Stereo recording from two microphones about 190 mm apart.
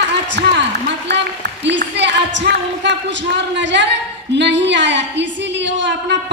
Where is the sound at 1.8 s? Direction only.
70° right (ahead or behind).